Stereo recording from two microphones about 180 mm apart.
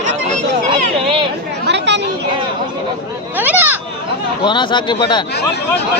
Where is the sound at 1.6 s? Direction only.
75° right (ahead or behind).